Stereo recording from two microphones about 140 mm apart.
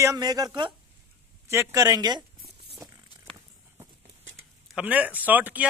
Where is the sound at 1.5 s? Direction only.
20° right (ahead or behind).